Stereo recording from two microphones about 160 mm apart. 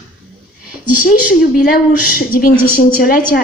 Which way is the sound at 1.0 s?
60° left (ahead or behind).